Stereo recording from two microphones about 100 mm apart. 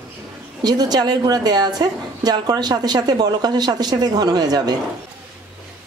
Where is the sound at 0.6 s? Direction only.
40° right (ahead or behind).